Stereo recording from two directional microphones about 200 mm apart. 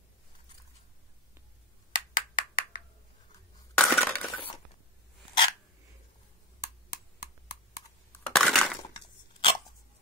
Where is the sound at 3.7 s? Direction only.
5° left (ahead or behind).